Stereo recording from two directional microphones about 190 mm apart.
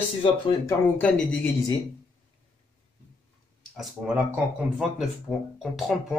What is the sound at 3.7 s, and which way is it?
Speech, 5° right (ahead or behind).